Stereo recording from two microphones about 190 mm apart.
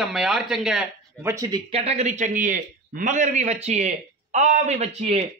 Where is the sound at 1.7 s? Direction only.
30° right (ahead or behind).